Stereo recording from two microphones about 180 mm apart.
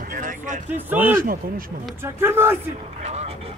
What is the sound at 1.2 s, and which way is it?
Speech, 55° right (ahead or behind).